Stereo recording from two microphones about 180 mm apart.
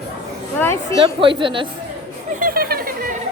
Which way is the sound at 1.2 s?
30° right (ahead or behind).